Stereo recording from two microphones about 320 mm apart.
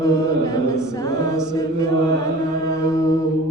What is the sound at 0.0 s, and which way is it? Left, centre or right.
A capella, centre.